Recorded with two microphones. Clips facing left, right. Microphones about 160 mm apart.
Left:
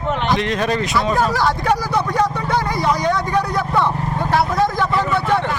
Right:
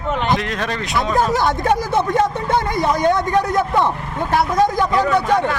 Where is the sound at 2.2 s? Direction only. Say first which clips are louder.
Right 1 dB; 50° right (ahead or behind).